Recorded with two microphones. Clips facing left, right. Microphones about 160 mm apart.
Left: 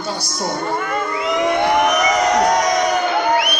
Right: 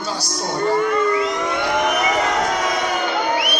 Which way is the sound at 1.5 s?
40° left (ahead or behind).